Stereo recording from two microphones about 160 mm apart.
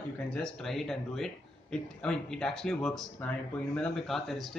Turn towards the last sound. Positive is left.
turn(degrees=0)  # may be behind; listen again after turning